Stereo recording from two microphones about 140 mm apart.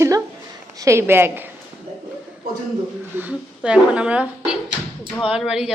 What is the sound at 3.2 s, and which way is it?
A woman's voice, 10° right (ahead or behind).